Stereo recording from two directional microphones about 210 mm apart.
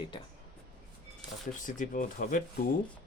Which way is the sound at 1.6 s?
40° left (ahead or behind).